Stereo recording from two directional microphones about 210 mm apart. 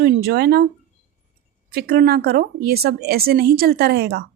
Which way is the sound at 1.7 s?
45° right (ahead or behind).